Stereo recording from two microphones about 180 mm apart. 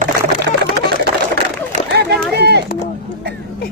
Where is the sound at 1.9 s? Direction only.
65° right (ahead or behind).